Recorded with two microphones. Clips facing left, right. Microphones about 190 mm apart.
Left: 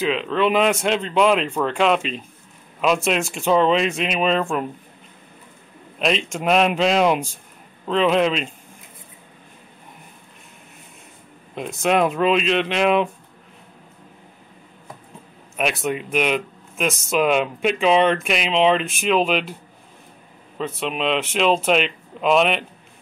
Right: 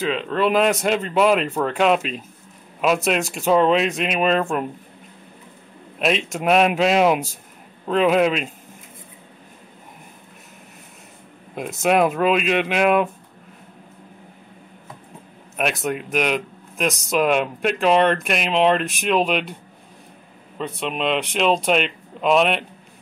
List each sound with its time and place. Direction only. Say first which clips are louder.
0.1 s speech: right 1 dB; centre (ahead or behind)
5.9 s a man's voice: even; 5° right (ahead or behind)
11.8 s speech: right 1 dB; 5° right (ahead or behind)
15.5 s speech: even; centre (ahead or behind)
20.5 s speech: left 1 dB; centre (ahead or behind)